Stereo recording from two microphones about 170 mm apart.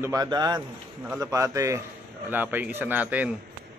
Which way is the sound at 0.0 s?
20° right (ahead or behind).